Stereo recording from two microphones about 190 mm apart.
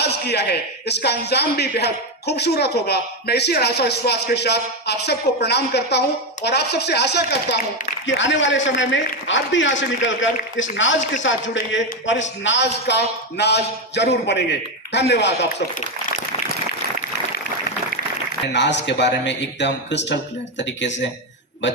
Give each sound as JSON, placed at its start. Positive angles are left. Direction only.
{"t": 0.0, "sound": "a man's voice", "side_deg": 60}
{"t": 8.0, "sound": "speech", "side_deg": 75}
{"t": 18.5, "sound": "speech", "side_deg": 65}